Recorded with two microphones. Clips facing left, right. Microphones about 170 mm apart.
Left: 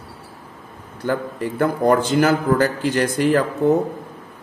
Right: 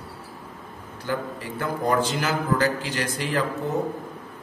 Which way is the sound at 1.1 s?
55° left (ahead or behind).